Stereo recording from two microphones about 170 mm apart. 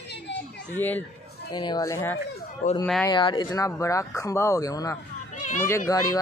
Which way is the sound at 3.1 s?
25° left (ahead or behind).